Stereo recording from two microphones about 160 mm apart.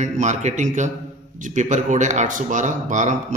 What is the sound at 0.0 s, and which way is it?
A man's voice, 45° right (ahead or behind).